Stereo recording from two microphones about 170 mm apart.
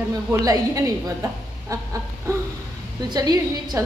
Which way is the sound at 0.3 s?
20° right (ahead or behind).